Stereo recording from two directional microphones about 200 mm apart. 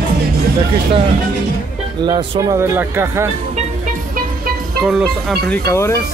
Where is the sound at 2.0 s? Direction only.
20° right (ahead or behind).